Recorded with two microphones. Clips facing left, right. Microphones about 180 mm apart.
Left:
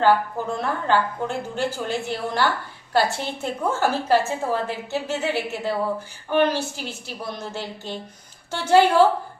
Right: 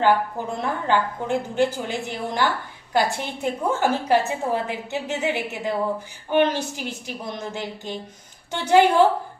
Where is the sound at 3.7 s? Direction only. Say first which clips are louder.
Even; 15° right (ahead or behind).